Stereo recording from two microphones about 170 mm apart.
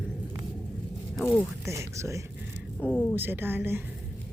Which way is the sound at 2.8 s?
5° left (ahead or behind).